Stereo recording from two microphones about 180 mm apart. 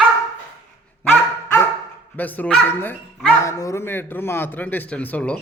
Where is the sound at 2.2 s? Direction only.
10° left (ahead or behind).